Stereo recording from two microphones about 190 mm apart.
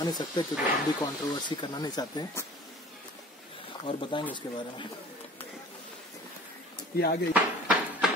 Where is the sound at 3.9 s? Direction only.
25° left (ahead or behind).